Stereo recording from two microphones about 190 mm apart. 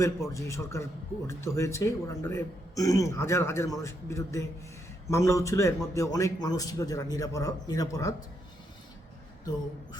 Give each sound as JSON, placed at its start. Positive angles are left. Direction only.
{"t": 0.0, "sound": "a man's voice", "side_deg": 15}